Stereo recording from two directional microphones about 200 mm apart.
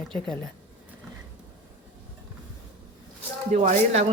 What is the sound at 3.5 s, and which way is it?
Speech, 35° right (ahead or behind).